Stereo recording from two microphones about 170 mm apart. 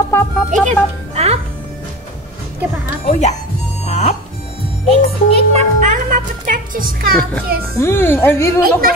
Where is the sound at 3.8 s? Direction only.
40° left (ahead or behind).